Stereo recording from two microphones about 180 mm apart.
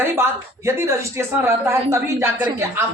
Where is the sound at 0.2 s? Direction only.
15° right (ahead or behind).